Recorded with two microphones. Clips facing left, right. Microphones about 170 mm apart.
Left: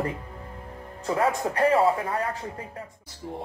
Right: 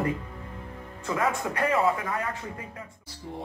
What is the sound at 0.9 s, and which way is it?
Speech, 35° left (ahead or behind).